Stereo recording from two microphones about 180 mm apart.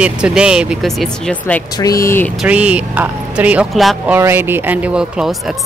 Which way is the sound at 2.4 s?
5° right (ahead or behind).